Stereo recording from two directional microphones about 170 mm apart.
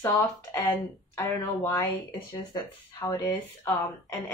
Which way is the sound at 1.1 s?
15° left (ahead or behind).